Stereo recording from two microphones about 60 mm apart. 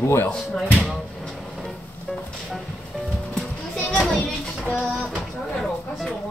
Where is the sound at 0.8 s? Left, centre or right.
Centre.